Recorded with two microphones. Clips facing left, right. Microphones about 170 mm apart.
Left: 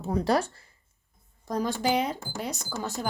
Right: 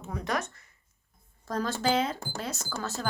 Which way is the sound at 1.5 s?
15° left (ahead or behind).